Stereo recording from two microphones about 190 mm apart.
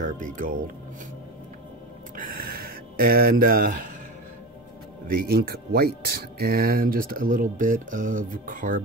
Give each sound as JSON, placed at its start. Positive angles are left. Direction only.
{"t": 0.0, "sound": "speech", "side_deg": -45}
{"t": 2.1, "sound": "speech", "side_deg": -50}
{"t": 5.3, "sound": "speech", "side_deg": -55}